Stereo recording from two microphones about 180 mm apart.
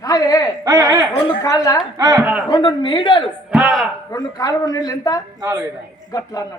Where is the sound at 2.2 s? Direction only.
5° right (ahead or behind).